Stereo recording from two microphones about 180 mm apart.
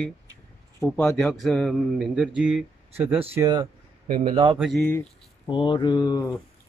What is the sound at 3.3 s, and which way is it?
Speech, 20° right (ahead or behind).